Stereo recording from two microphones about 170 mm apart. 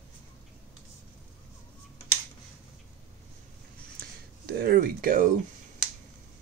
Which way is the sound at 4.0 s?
65° right (ahead or behind).